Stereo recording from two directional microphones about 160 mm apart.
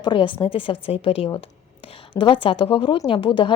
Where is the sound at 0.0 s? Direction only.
30° left (ahead or behind).